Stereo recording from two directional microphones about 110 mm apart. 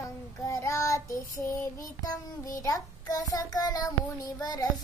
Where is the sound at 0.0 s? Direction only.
30° left (ahead or behind).